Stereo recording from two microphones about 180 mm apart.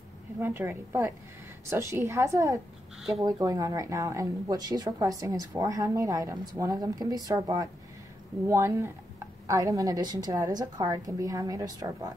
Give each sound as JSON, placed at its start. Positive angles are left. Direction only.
{"t": 0.4, "sound": "a woman's voice", "side_deg": -15}
{"t": 3.0, "sound": "speech", "side_deg": 0}
{"t": 3.3, "sound": "a woman's voice", "side_deg": -20}